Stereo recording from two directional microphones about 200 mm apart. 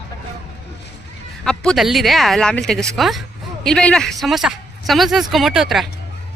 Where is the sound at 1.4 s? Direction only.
5° left (ahead or behind).